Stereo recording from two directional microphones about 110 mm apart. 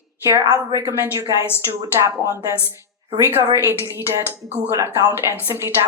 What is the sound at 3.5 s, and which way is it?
A woman's voice, 25° right (ahead or behind).